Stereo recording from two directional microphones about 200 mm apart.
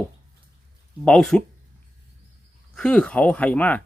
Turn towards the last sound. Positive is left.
turn(degrees=5)  # may be behind; listen again after turning